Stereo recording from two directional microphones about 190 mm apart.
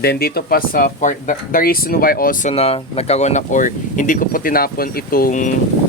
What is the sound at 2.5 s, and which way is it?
Speech, 30° left (ahead or behind).